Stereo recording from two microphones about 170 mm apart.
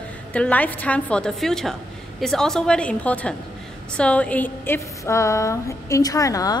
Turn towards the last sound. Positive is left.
turn(degrees=20)  # may be behind; listen again after turning